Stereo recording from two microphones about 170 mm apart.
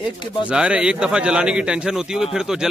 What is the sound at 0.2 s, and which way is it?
Speech, 30° left (ahead or behind).